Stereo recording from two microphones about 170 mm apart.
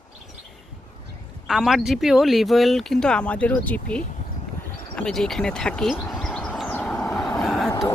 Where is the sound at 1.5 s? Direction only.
Centre (ahead or behind).